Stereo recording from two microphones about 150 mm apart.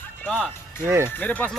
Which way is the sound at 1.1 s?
10° left (ahead or behind).